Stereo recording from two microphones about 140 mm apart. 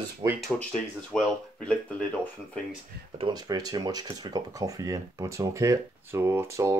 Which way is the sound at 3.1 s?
30° right (ahead or behind).